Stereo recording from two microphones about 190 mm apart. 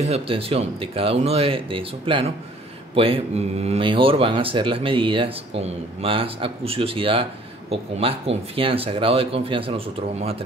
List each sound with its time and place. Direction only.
0.0 s speech: 30° right (ahead or behind)